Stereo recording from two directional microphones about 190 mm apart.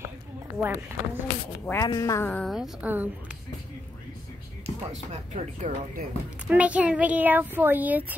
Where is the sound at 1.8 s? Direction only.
20° left (ahead or behind).